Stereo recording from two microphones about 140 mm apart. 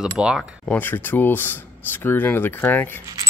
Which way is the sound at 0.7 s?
15° left (ahead or behind).